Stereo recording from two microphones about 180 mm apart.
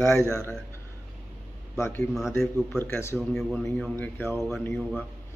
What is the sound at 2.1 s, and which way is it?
A man's voice, centre (ahead or behind).